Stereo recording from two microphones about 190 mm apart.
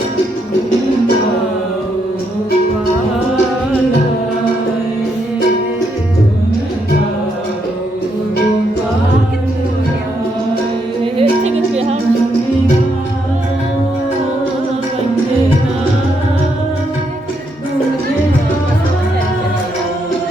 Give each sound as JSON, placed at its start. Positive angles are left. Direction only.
{"t": 11.0, "sound": "music", "side_deg": -30}